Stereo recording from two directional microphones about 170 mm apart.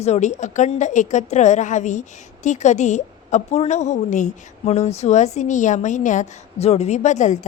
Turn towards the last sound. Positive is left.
turn(degrees=45)  # may be behind; listen again after turning